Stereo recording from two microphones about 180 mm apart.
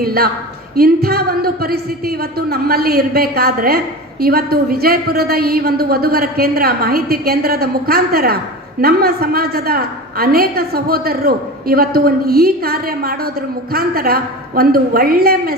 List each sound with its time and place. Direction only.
0.0 s a woman's voice: 60° right (ahead or behind)